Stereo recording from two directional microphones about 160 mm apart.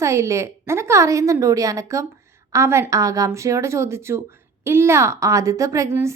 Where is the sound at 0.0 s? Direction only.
20° right (ahead or behind).